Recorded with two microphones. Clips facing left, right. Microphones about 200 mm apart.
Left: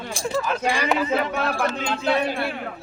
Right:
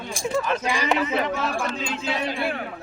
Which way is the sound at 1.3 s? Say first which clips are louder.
Left 2 dB; 65° left (ahead or behind).